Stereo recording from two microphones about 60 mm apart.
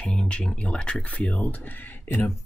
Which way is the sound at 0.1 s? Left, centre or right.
Centre.